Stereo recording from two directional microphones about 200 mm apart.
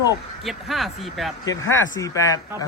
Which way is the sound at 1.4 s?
15° left (ahead or behind).